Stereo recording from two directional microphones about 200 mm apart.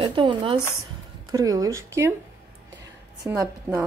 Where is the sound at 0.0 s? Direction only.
25° right (ahead or behind).